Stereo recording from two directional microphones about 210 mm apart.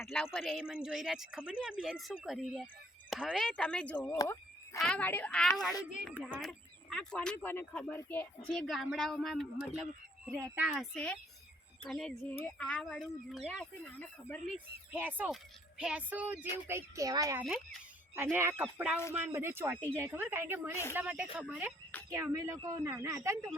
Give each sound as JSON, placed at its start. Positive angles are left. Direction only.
{"t": 0.0, "sound": "speech", "side_deg": 5}
{"t": 4.2, "sound": "a sound", "side_deg": 15}
{"t": 4.8, "sound": "speech", "side_deg": 5}
{"t": 10.3, "sound": "speech", "side_deg": -10}
{"t": 14.9, "sound": "speech", "side_deg": -10}
{"t": 22.1, "sound": "speech", "side_deg": -15}